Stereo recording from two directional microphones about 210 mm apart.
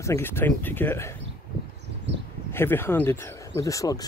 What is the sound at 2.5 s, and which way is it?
Speech, 10° left (ahead or behind).